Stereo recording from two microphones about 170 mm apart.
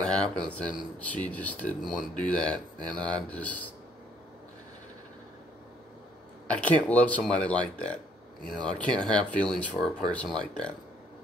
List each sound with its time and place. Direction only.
0.0 s a sound: 5° left (ahead or behind)
0.5 s speech: 10° left (ahead or behind)
6.4 s speech: 5° left (ahead or behind)